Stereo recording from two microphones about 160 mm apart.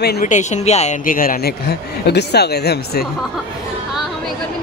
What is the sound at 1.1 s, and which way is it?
Speech, 60° left (ahead or behind).